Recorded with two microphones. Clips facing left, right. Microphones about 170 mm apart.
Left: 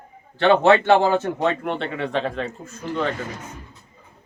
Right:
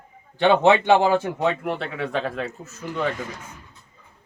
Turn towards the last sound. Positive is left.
turn(degrees=-10)  # may be behind; listen again after turning